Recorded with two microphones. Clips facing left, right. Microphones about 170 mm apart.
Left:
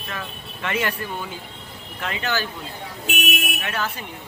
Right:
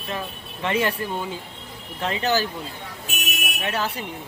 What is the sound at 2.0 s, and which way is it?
Speech, 30° right (ahead or behind).